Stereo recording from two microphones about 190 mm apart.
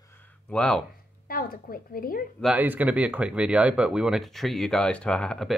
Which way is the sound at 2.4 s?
5° right (ahead or behind).